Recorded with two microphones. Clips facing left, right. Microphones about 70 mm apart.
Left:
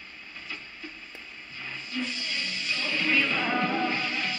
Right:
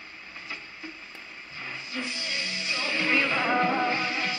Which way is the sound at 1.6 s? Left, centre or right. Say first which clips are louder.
Left 1 dB; centre.